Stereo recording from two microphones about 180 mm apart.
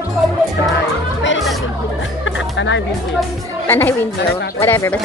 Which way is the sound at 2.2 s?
90° left.